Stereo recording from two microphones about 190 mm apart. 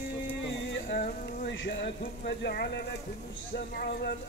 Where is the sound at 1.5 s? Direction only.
65° left (ahead or behind).